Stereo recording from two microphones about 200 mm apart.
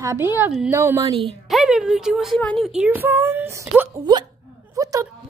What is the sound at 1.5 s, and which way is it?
Speech, centre (ahead or behind).